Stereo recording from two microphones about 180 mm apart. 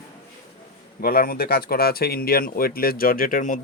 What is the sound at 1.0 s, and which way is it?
Speech, 55° left (ahead or behind).